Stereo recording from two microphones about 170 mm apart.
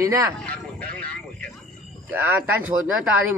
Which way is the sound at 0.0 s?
20° right (ahead or behind).